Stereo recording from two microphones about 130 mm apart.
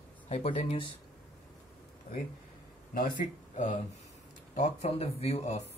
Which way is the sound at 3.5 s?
70° left (ahead or behind).